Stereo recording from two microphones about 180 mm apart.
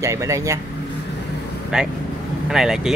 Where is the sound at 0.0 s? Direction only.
15° right (ahead or behind).